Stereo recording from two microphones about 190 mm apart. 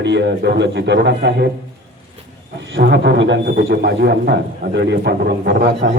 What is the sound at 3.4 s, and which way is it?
A man's voice, 55° right (ahead or behind).